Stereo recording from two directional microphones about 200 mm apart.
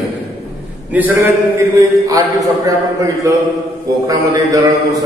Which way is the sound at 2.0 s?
15° right (ahead or behind).